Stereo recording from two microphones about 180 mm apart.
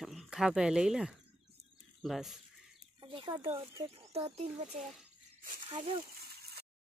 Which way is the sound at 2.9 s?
25° right (ahead or behind).